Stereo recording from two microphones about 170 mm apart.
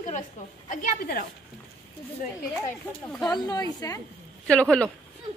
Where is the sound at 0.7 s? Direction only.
50° left (ahead or behind).